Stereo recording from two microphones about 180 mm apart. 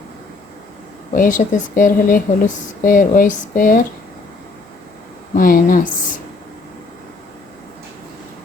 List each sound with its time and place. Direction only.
1.1 s speech: 50° left (ahead or behind)
5.3 s speech: 50° left (ahead or behind)